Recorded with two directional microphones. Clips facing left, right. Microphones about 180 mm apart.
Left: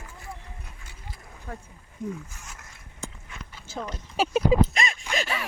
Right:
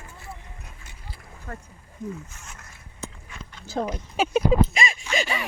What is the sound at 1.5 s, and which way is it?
Speech, 10° left (ahead or behind).